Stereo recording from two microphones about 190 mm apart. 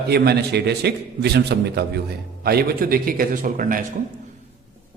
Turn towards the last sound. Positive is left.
turn(degrees=-45)  # may be behind; listen again after turning